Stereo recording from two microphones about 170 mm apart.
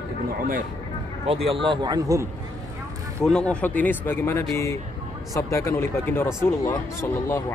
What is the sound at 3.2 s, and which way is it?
Speech, 5° left (ahead or behind).